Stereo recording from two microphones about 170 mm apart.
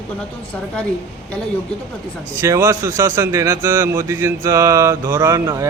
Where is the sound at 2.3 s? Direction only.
15° right (ahead or behind).